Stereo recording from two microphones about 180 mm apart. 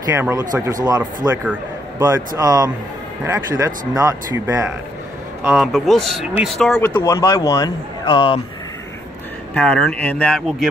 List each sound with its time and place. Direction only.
0.1 s speech: 15° right (ahead or behind)
5.5 s a man's voice: centre (ahead or behind)
7.0 s speech: 20° left (ahead or behind)
9.5 s speech: 10° left (ahead or behind)